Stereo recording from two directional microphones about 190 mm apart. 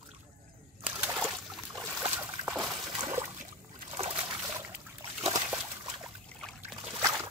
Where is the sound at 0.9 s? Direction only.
10° right (ahead or behind).